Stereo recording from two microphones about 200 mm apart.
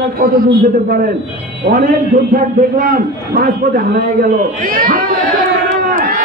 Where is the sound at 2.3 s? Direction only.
45° right (ahead or behind).